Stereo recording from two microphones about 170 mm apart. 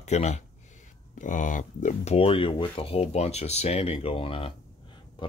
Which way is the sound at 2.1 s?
35° left (ahead or behind).